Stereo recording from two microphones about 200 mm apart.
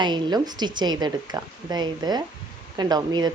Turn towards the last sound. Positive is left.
turn(degrees=-20)  # may be behind; listen again after turning